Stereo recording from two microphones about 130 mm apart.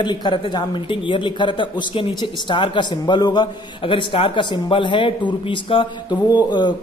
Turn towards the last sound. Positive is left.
turn(degrees=35)  # may be behind; listen again after turning